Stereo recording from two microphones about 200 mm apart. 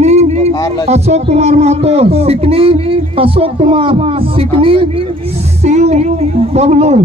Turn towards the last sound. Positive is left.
turn(degrees=-30)  # may be behind; listen again after turning